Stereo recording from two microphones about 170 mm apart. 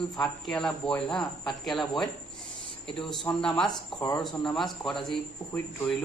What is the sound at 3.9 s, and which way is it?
Speech, 25° left (ahead or behind).